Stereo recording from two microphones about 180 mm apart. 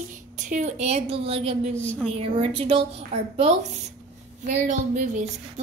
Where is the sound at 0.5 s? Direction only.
40° right (ahead or behind).